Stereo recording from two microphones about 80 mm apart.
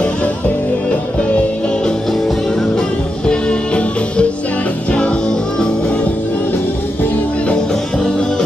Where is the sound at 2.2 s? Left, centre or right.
Centre.